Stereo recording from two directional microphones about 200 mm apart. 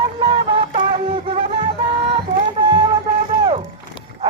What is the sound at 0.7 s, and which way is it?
Music, 30° right (ahead or behind).